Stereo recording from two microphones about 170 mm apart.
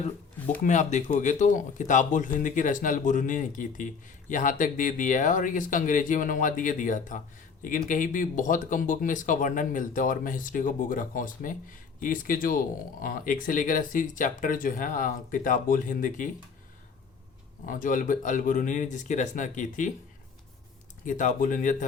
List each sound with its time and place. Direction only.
0.6 s speech: 45° left (ahead or behind)
17.7 s speech: 50° left (ahead or behind)
21.0 s speech: 50° left (ahead or behind)